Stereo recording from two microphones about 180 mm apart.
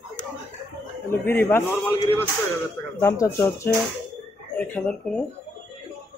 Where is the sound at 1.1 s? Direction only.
10° left (ahead or behind).